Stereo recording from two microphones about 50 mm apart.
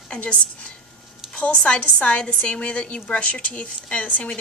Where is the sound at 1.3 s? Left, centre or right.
Left.